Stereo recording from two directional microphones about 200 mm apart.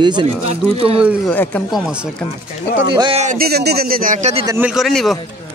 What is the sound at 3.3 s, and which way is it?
Speech, 50° right (ahead or behind).